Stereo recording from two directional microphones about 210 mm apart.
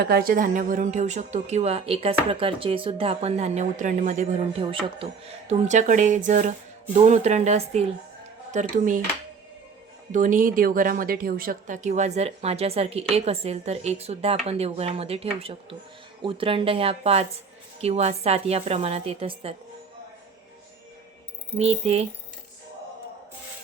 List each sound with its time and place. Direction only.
0.0 s a woman's voice: 45° right (ahead or behind)
10.1 s a woman's voice: 35° right (ahead or behind)
21.6 s a woman's voice: 30° right (ahead or behind)